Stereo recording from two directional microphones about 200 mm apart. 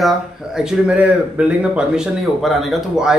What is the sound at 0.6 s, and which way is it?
Speech, 5° right (ahead or behind).